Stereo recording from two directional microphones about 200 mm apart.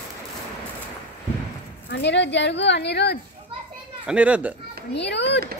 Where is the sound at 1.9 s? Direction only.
60° left (ahead or behind).